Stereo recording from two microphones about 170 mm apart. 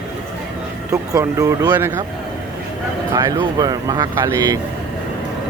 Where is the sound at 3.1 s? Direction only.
20° right (ahead or behind).